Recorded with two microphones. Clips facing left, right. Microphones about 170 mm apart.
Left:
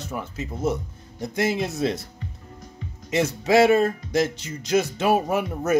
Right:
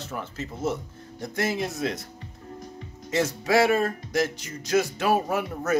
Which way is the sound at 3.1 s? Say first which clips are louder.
Left 3 dB; 20° left (ahead or behind).